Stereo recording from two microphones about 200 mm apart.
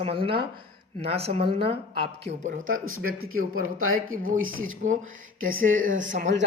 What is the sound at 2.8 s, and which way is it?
Speech, 90° right.